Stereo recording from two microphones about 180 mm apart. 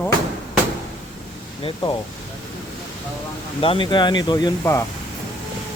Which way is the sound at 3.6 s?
30° left (ahead or behind).